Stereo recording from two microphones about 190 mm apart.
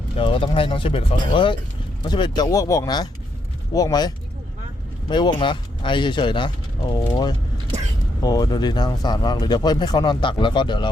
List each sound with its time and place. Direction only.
0.2 s speech: 30° left (ahead or behind)